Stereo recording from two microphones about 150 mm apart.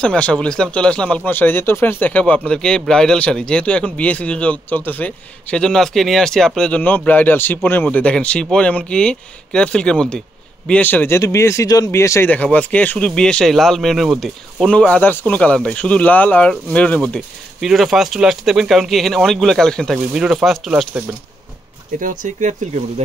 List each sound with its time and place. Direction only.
0.0 s speech: 5° left (ahead or behind)
22.0 s speech: 60° right (ahead or behind)